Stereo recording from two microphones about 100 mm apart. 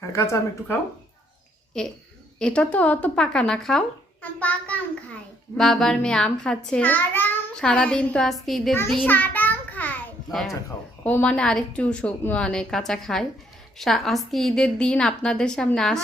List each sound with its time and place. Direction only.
0.1 s speech: 30° left (ahead or behind)
2.4 s a woman's voice: 10° left (ahead or behind)
5.5 s a woman's voice: 5° left (ahead or behind); by 7.3 s 20° left (ahead or behind)
7.5 s a woman's voice: 10° left (ahead or behind)
9.0 s child singing: 15° left (ahead or behind)
11.0 s a woman's voice: 15° left (ahead or behind)